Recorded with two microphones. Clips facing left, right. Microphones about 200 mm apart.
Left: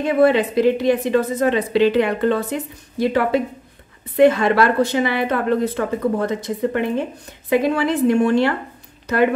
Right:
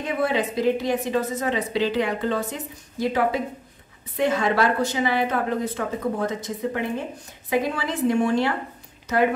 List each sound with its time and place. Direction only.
0.0 s a woman's voice: 65° left (ahead or behind)